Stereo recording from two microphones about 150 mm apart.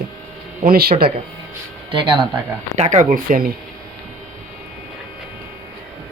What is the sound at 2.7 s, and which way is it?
Speech, 50° right (ahead or behind).